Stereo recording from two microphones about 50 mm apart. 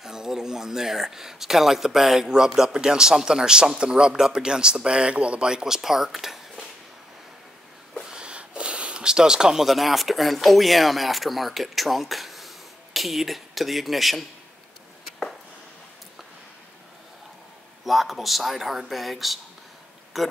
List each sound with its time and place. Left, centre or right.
0.0 s speech: centre
8.0 s a sound: centre
9.7 s speech: centre
17.8 s speech: centre